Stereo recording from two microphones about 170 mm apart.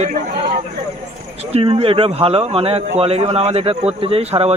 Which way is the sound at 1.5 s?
35° right (ahead or behind).